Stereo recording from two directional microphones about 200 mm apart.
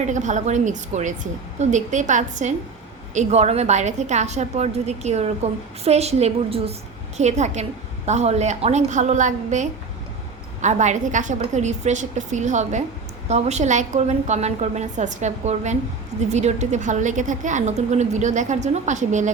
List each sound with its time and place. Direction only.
0.0 s a woman's voice: 35° right (ahead or behind)